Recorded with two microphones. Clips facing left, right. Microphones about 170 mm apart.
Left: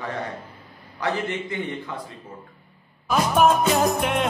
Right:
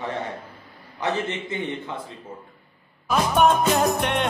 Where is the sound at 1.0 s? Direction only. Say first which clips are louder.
Even; 20° right (ahead or behind).